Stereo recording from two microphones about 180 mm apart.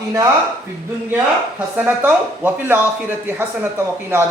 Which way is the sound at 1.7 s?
10° right (ahead or behind).